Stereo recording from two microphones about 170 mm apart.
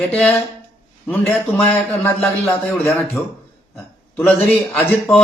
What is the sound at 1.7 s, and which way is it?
Speech, 10° left (ahead or behind).